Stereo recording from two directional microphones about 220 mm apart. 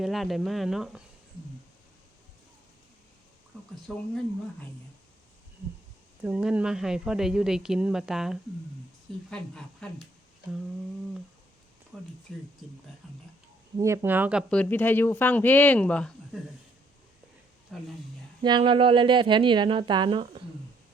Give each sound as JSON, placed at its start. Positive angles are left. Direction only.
{"t": 0.0, "sound": "speech", "side_deg": 0}
{"t": 3.9, "sound": "speech", "side_deg": 0}
{"t": 6.2, "sound": "speech", "side_deg": -5}
{"t": 11.9, "sound": "speech", "side_deg": 0}
{"t": 13.7, "sound": "speech", "side_deg": -15}
{"t": 14.5, "sound": "speech", "side_deg": 5}
{"t": 17.7, "sound": "speech", "side_deg": 0}
{"t": 18.4, "sound": "speech", "side_deg": -20}